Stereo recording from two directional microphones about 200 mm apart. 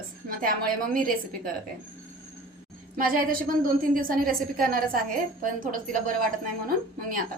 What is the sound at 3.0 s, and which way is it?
A woman's voice, 45° right (ahead or behind).